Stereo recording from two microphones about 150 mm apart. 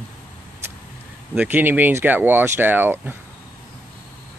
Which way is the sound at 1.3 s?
10° right (ahead or behind).